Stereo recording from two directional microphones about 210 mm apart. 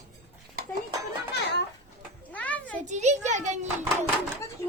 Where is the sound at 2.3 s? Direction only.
5° left (ahead or behind).